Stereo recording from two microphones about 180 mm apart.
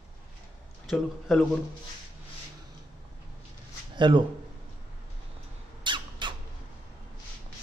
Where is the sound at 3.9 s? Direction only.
25° right (ahead or behind).